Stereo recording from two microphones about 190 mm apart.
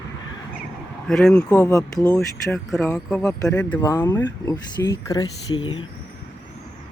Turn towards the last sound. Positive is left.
turn(degrees=25)  # may be behind; listen again after turning